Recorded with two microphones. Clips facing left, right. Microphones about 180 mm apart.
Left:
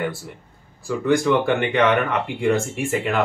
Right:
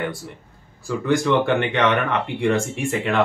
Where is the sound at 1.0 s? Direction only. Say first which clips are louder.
Left 1 dB; centre (ahead or behind).